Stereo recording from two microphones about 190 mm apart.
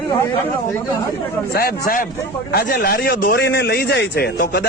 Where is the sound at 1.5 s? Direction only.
50° left (ahead or behind).